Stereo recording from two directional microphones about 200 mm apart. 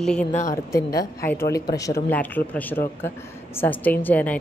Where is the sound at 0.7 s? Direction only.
15° left (ahead or behind).